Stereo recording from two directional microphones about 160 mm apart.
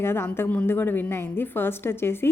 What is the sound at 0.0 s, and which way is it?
A woman's voice, 15° left (ahead or behind).